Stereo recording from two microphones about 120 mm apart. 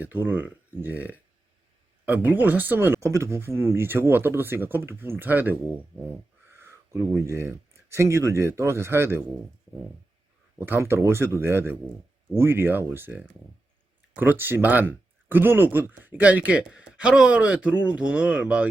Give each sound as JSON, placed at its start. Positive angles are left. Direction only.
{"t": 0.0, "sound": "speech", "side_deg": -15}
{"t": 6.5, "sound": "a sound", "side_deg": -20}
{"t": 7.2, "sound": "speech", "side_deg": -20}
{"t": 10.6, "sound": "speech", "side_deg": -20}